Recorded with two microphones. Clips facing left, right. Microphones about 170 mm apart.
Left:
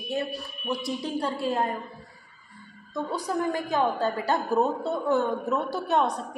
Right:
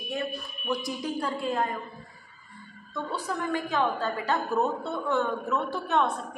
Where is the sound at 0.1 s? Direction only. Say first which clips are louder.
Left 3 dB; 35° left (ahead or behind).